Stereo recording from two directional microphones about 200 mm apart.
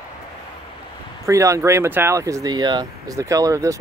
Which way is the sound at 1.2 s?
15° right (ahead or behind).